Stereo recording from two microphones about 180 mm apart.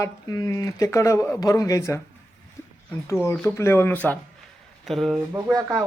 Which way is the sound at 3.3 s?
10° left (ahead or behind).